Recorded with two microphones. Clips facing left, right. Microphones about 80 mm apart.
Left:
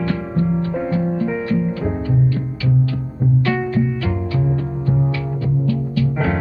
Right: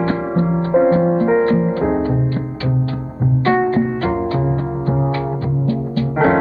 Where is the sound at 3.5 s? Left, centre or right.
Right.